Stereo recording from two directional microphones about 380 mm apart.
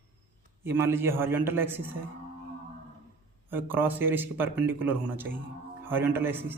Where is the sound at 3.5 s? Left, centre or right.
Centre.